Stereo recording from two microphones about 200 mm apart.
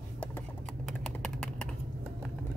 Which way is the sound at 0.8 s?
Centre (ahead or behind).